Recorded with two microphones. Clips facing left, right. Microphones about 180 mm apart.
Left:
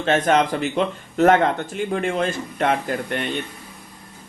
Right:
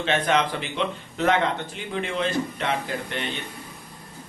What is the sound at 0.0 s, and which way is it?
Speech, 45° left (ahead or behind).